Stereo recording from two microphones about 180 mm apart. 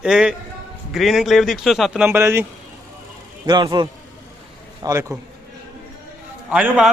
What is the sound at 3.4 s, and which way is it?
Speech, 25° right (ahead or behind).